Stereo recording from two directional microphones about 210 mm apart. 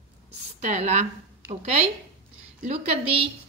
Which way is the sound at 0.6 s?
35° right (ahead or behind).